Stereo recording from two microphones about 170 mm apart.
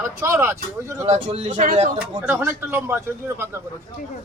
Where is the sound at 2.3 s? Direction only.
15° right (ahead or behind).